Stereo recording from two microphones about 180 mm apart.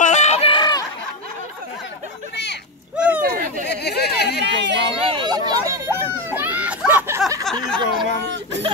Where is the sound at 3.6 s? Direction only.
65° left (ahead or behind).